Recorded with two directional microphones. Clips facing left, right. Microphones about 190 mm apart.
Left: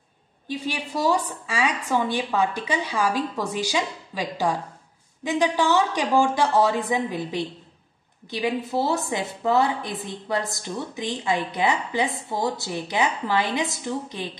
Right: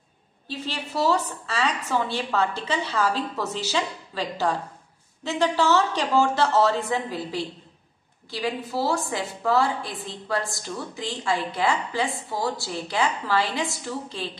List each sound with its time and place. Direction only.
0.5 s a woman's voice: 15° left (ahead or behind)